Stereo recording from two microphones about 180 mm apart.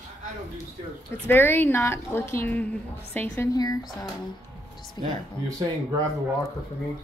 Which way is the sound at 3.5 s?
20° left (ahead or behind).